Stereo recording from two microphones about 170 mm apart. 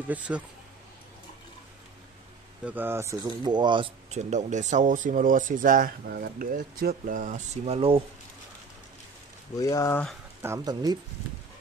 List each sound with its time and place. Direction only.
0.3 s speech: 10° right (ahead or behind)
2.6 s speech: 10° right (ahead or behind)
3.3 s speech: 25° right (ahead or behind)
9.6 s speech: 20° left (ahead or behind)
10.4 s speech: 20° right (ahead or behind)